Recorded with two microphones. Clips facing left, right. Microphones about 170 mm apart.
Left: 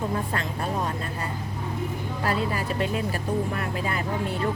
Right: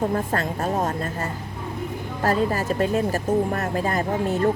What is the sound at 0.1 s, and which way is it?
Speech, 45° right (ahead or behind).